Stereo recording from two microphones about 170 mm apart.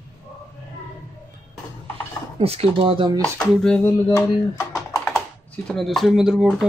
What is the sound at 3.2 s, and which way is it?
Speech, 5° left (ahead or behind).